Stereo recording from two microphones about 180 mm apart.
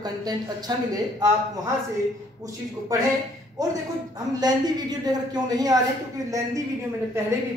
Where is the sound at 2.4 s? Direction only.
20° right (ahead or behind).